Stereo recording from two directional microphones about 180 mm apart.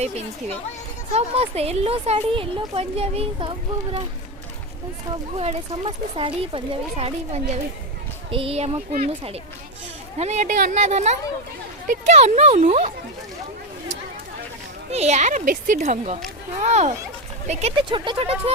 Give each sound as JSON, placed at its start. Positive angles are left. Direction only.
{"t": 1.1, "sound": "speech", "side_deg": -35}
{"t": 5.4, "sound": "speech", "side_deg": -30}
{"t": 10.2, "sound": "speech", "side_deg": -40}
{"t": 14.8, "sound": "speech", "side_deg": -35}